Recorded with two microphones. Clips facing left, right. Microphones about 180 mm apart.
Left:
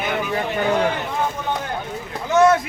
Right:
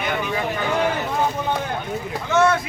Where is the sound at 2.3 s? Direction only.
40° left (ahead or behind).